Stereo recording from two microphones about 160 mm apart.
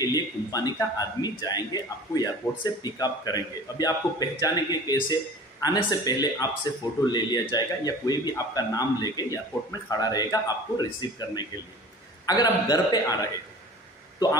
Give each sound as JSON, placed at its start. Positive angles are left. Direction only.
{"t": 0.1, "sound": "a man's voice", "side_deg": 25}